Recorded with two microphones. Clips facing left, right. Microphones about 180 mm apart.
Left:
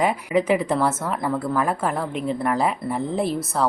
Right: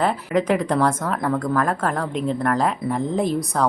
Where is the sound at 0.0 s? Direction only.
10° left (ahead or behind).